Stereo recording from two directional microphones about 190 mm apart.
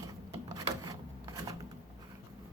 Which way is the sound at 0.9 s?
15° right (ahead or behind).